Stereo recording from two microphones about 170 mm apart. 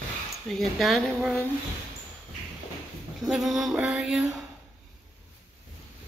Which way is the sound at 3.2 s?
Centre (ahead or behind).